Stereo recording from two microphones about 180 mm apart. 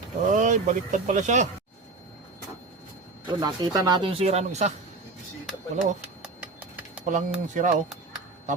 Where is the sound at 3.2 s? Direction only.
25° right (ahead or behind).